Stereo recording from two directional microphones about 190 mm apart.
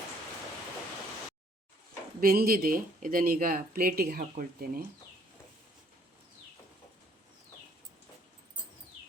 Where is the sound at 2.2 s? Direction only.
50° right (ahead or behind).